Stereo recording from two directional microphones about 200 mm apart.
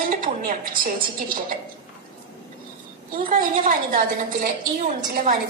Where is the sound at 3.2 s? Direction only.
40° right (ahead or behind).